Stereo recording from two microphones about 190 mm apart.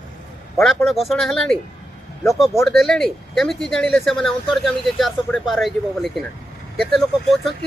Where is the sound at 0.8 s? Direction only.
Centre (ahead or behind).